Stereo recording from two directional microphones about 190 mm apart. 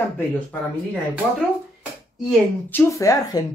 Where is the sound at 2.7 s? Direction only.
15° left (ahead or behind).